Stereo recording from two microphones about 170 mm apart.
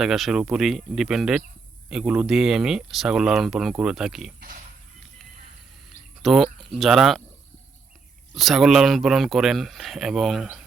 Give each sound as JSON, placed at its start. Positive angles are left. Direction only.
{"t": 0.0, "sound": "speech", "side_deg": 0}
{"t": 4.4, "sound": "a sound", "side_deg": -50}
{"t": 6.2, "sound": "speech", "side_deg": 0}
{"t": 8.4, "sound": "speech", "side_deg": 0}